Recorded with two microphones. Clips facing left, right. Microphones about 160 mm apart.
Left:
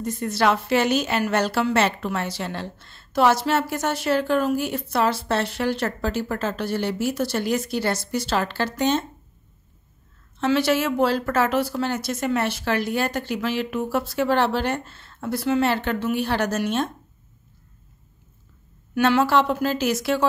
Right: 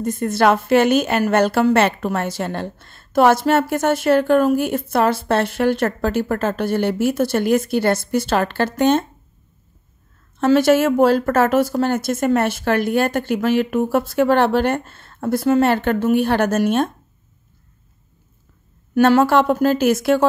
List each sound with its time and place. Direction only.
0.0 s a woman's voice: 50° right (ahead or behind)
10.4 s a woman's voice: 45° right (ahead or behind)
18.9 s a woman's voice: 45° right (ahead or behind)